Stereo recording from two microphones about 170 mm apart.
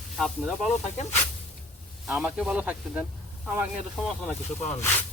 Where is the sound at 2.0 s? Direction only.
5° right (ahead or behind).